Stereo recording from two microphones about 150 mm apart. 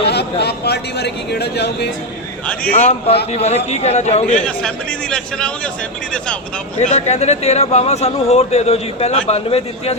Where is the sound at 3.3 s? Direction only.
45° left (ahead or behind).